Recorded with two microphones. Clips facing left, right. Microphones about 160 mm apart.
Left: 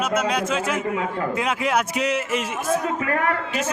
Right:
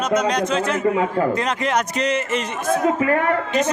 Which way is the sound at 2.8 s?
30° right (ahead or behind).